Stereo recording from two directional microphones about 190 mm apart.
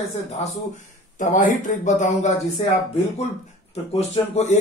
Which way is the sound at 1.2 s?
40° left (ahead or behind).